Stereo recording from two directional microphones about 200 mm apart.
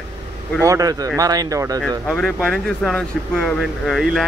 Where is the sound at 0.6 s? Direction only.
15° right (ahead or behind).